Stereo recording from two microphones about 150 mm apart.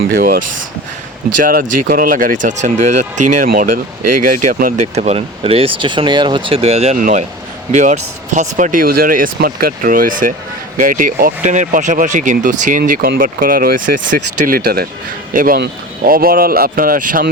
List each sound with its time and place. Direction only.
0.1 s speech: 70° right (ahead or behind); by 7.0 s 45° right (ahead or behind)
7.0 s speech: 55° right (ahead or behind); by 14.8 s 90° right
15.3 s speech: 70° right (ahead or behind)